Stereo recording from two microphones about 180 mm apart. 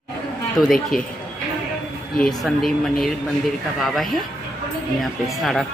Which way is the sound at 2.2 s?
Centre (ahead or behind).